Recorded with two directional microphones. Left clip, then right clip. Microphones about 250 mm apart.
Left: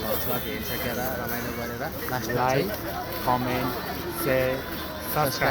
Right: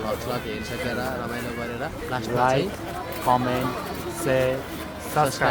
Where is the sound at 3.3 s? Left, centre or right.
Right.